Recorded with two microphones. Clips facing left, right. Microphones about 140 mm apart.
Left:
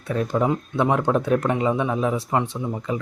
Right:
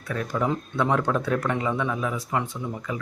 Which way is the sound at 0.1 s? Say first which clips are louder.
Left 4 dB; 25° left (ahead or behind).